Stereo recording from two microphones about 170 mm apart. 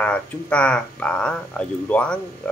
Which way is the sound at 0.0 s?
5° left (ahead or behind).